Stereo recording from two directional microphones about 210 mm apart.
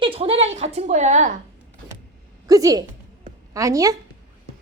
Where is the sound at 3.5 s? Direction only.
15° right (ahead or behind).